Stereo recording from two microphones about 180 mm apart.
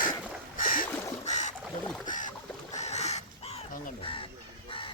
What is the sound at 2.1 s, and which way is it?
Rowboat, 45° left (ahead or behind).